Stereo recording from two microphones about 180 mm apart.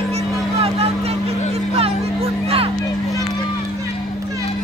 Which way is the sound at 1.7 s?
35° right (ahead or behind).